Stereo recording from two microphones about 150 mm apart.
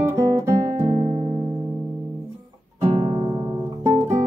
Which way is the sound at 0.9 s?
35° right (ahead or behind).